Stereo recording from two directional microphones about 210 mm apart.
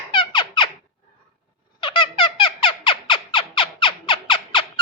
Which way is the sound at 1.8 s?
25° left (ahead or behind).